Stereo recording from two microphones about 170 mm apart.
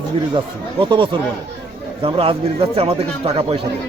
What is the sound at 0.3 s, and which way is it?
A man's voice, 30° right (ahead or behind).